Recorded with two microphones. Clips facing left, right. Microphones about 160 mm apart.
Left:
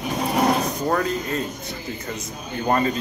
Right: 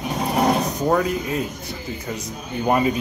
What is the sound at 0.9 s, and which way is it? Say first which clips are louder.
Speech: right 3 dB; 10° right (ahead or behind).